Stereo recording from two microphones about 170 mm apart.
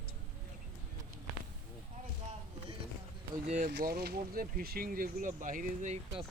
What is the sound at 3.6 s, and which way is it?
Speech, 65° right (ahead or behind).